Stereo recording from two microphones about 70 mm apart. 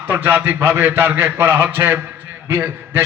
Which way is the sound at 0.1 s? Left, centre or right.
Right.